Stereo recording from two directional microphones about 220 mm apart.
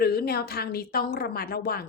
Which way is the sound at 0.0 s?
45° left (ahead or behind).